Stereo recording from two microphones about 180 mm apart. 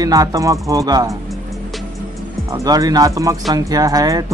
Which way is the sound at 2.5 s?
20° right (ahead or behind).